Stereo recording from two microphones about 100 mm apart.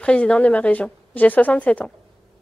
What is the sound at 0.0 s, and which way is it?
Speech, 10° left (ahead or behind).